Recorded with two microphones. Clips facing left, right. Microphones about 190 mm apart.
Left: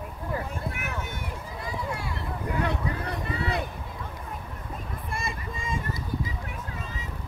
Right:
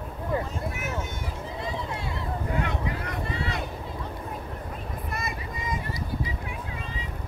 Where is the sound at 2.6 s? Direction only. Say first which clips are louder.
Left 1 dB; 35° left (ahead or behind).